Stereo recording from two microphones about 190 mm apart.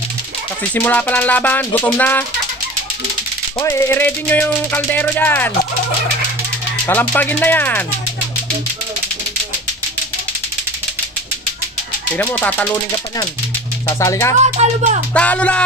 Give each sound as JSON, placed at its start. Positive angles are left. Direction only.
{"t": 0.7, "sound": "speech", "side_deg": 10}
{"t": 3.5, "sound": "speech", "side_deg": 20}
{"t": 6.9, "sound": "speech", "side_deg": 10}
{"t": 12.2, "sound": "speech", "side_deg": 10}
{"t": 13.8, "sound": "speech", "side_deg": 15}
{"t": 14.4, "sound": "speech", "side_deg": -35}
{"t": 15.1, "sound": "speech", "side_deg": 5}